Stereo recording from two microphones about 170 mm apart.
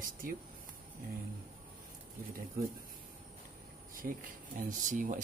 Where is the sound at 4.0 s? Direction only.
55° right (ahead or behind).